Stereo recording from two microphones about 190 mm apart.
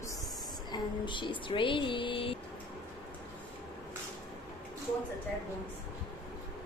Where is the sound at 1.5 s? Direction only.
25° left (ahead or behind).